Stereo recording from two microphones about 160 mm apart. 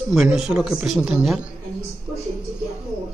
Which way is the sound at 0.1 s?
5° right (ahead or behind).